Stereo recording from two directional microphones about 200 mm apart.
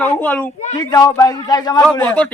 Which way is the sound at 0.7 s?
20° left (ahead or behind).